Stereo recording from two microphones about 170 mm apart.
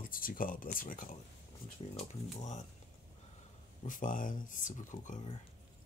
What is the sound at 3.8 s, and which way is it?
Speech, 50° left (ahead or behind).